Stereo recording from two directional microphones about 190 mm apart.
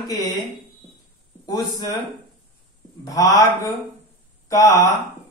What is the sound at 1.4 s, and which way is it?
Speech, 20° left (ahead or behind).